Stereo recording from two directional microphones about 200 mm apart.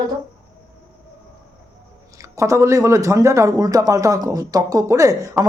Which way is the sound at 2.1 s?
15° right (ahead or behind).